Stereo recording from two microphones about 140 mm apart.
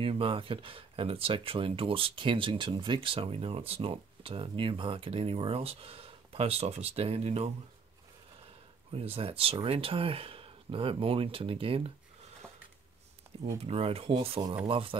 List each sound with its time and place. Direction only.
0.0 s speech: 40° right (ahead or behind)
8.9 s speech: 40° right (ahead or behind)
13.6 s speech: 45° right (ahead or behind)